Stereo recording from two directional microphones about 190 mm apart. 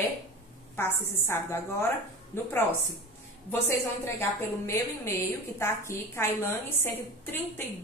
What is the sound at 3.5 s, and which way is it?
Speech, 15° left (ahead or behind).